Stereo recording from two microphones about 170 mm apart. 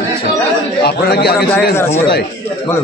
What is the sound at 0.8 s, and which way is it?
Speech, 70° left (ahead or behind).